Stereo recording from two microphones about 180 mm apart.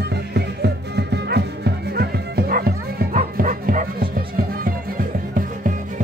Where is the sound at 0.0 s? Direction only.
65° right (ahead or behind).